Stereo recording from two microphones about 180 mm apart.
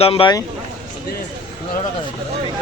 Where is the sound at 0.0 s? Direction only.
30° left (ahead or behind).